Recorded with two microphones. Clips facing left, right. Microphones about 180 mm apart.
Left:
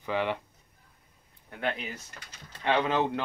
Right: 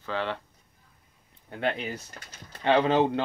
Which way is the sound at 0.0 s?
15° left (ahead or behind).